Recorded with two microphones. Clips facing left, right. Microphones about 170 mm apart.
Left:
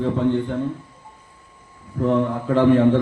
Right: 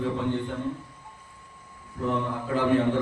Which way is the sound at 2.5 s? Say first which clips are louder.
Left 7 dB; 55° left (ahead or behind).